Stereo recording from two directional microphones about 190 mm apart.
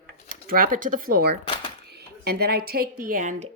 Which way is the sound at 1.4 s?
25° left (ahead or behind).